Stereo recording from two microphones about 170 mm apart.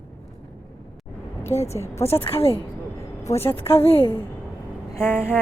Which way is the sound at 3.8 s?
35° left (ahead or behind).